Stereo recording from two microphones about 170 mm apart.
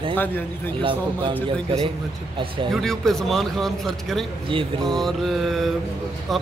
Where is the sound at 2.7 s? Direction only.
Centre (ahead or behind).